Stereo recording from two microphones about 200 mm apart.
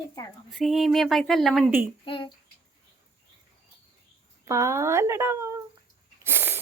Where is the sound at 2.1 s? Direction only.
25° left (ahead or behind).